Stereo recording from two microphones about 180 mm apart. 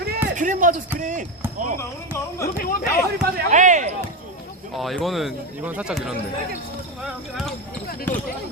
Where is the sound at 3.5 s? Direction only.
45° right (ahead or behind).